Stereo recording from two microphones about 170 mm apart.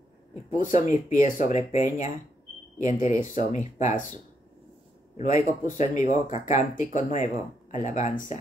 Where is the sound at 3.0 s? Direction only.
45° left (ahead or behind).